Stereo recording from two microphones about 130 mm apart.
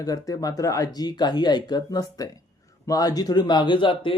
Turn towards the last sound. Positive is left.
turn(degrees=40)  # may be behind; listen again after turning